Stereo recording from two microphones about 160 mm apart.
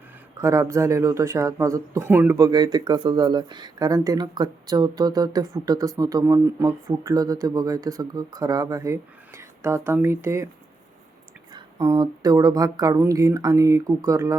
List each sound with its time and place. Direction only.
0.3 s speech: 20° right (ahead or behind)
11.5 s speech: 20° right (ahead or behind)